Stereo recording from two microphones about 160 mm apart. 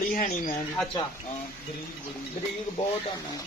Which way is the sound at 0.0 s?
60° left (ahead or behind).